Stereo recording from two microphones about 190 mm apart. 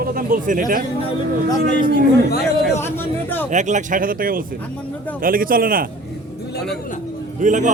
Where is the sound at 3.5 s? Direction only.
40° right (ahead or behind).